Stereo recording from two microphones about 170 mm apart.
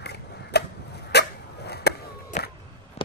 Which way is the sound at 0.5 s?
75° left (ahead or behind).